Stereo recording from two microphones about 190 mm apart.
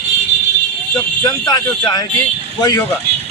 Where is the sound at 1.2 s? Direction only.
20° left (ahead or behind).